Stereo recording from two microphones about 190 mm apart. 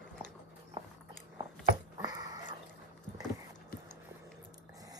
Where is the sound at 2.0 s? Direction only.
20° right (ahead or behind).